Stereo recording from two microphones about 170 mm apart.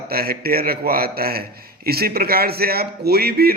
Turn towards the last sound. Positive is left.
turn(degrees=-65)  # may be behind; listen again after turning